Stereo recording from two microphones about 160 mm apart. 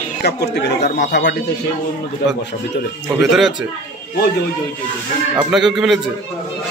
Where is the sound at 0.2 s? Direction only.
90° left.